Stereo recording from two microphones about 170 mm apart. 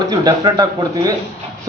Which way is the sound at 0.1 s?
20° right (ahead or behind).